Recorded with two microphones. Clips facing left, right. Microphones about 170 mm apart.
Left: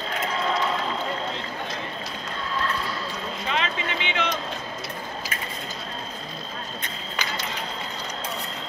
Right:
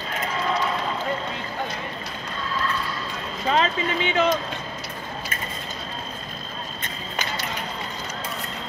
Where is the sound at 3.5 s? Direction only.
40° right (ahead or behind).